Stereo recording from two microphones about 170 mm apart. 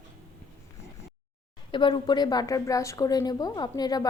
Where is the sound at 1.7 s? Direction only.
30° left (ahead or behind).